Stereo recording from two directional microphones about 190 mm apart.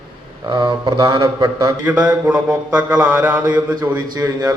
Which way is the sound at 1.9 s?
5° right (ahead or behind).